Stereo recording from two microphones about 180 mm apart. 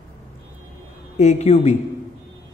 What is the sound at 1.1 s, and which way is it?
Speech, 40° left (ahead or behind).